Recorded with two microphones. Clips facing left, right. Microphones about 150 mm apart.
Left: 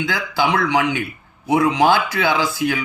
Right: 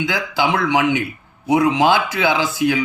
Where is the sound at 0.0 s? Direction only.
20° right (ahead or behind).